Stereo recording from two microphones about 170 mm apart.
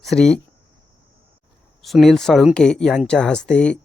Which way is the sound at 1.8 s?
Centre (ahead or behind).